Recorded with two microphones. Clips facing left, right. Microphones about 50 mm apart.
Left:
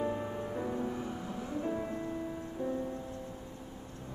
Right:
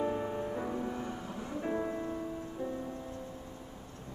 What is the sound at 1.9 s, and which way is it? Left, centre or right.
Music, centre.